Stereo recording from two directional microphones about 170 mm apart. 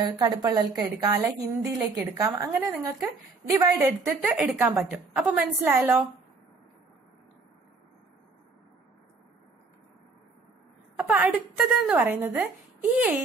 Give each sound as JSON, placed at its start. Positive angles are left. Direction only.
{"t": 0.0, "sound": "a woman's voice", "side_deg": -25}
{"t": 11.0, "sound": "a woman's voice", "side_deg": -10}